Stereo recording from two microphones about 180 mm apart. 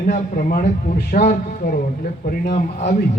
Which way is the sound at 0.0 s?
50° left (ahead or behind).